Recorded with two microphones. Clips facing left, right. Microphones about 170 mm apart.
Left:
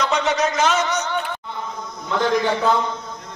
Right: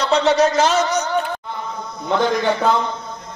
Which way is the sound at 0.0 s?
30° right (ahead or behind).